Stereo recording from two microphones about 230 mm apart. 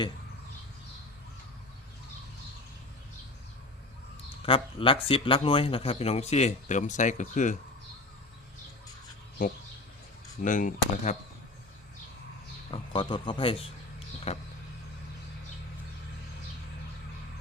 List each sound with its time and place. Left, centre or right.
4.4 s a man's voice: left
10.4 s speech: left
12.7 s a man's voice: left